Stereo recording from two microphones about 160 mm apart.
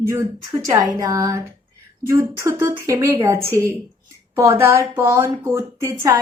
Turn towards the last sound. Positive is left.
turn(degrees=-20)  # may be behind; listen again after turning